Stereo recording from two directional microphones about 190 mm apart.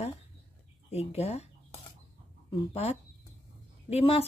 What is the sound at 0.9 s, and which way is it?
Speech, 35° left (ahead or behind).